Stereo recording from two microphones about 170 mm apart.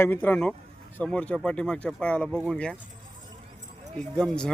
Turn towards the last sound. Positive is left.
turn(degrees=5)  # may be behind; listen again after turning